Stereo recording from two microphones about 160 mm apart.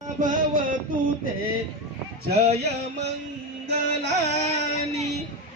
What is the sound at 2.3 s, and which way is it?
Music, 90° right.